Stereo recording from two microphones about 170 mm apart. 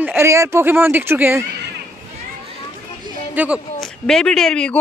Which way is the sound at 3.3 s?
5° right (ahead or behind).